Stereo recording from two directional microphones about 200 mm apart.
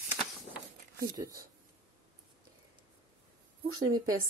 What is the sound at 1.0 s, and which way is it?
Speech, 15° right (ahead or behind).